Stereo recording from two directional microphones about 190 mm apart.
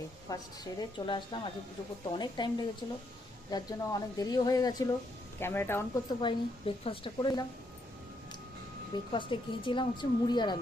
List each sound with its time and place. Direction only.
0.3 s a woman's voice: 20° left (ahead or behind)
6.1 s a woman's voice: 25° left (ahead or behind)
9.1 s a woman's voice: 25° left (ahead or behind)